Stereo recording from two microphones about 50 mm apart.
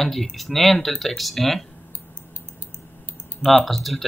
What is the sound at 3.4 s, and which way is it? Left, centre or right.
Speech, centre.